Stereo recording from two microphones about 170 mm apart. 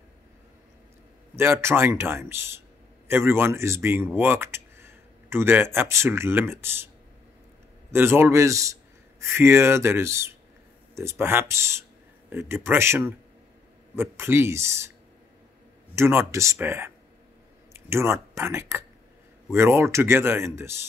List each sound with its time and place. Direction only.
1.3 s speech: 15° right (ahead or behind)
7.9 s speech: 15° right (ahead or behind)
15.9 s speech: 15° right (ahead or behind)